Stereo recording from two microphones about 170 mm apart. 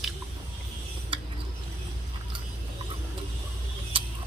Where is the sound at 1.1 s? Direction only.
30° right (ahead or behind).